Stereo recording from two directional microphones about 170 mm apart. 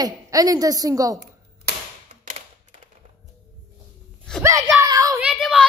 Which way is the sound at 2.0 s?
45° right (ahead or behind).